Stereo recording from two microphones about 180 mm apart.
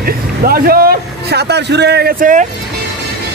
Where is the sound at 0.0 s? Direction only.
55° right (ahead or behind).